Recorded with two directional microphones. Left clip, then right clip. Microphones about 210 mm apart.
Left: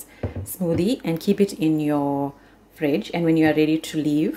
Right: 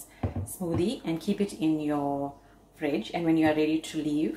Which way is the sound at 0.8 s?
45° left (ahead or behind).